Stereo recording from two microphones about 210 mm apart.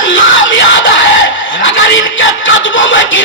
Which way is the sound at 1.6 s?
65° left (ahead or behind).